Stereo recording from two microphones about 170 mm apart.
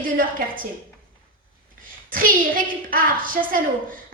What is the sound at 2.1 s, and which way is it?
A woman's voice, 55° right (ahead or behind).